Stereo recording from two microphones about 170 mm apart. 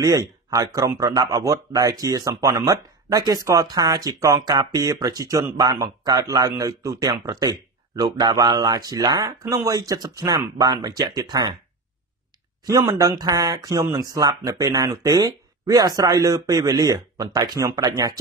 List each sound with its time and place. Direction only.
0.5 s speech: 20° right (ahead or behind)
12.6 s speech: 15° right (ahead or behind)